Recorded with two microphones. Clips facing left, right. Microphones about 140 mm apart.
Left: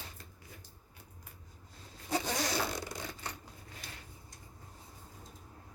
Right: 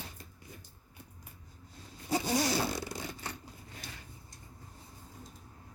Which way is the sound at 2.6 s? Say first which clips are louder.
Right 2 dB; 10° right (ahead or behind).